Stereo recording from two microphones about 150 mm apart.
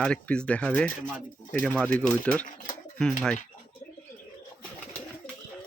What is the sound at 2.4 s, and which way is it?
Pigeon, 55° left (ahead or behind).